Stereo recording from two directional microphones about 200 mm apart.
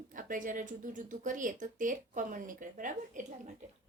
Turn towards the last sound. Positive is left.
turn(degrees=-40)  # may be behind; listen again after turning